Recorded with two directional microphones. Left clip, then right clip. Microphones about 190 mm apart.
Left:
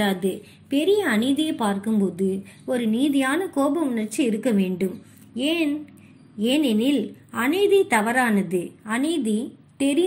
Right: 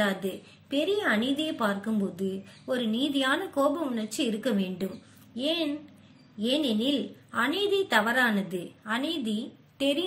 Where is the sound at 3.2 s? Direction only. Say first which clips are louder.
Left 3 dB; 15° left (ahead or behind).